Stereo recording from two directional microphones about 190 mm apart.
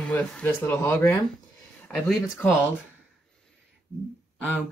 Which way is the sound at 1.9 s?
Centre (ahead or behind).